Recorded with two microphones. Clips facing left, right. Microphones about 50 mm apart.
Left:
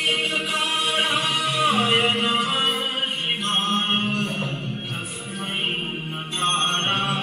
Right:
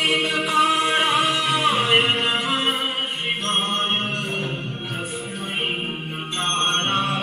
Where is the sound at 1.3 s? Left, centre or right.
Right.